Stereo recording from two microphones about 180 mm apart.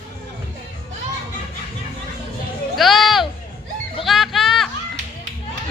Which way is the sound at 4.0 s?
Centre (ahead or behind).